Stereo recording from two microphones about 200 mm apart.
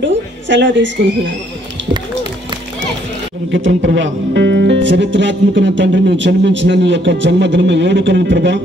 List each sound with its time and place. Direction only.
0.0 s a woman's voice: 65° right (ahead or behind)
3.5 s speech: 65° right (ahead or behind)